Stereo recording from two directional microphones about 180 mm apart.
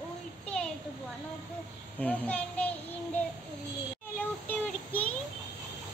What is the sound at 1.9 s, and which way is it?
Child singing, 10° left (ahead or behind).